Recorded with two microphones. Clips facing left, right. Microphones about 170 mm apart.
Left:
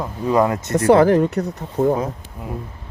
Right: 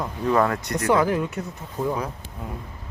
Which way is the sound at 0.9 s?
70° left (ahead or behind).